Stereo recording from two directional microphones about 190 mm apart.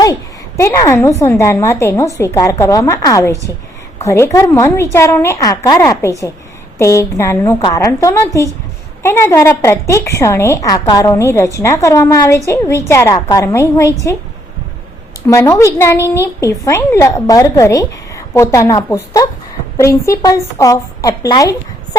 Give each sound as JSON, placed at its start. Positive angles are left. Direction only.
{"t": 0.0, "sound": "a woman's voice", "side_deg": 15}
{"t": 15.3, "sound": "a woman's voice", "side_deg": 15}